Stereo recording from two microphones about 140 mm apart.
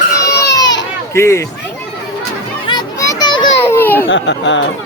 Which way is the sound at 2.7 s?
25° left (ahead or behind).